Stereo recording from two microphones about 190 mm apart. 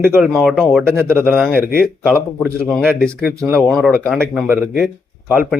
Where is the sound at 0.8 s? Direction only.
15° right (ahead or behind).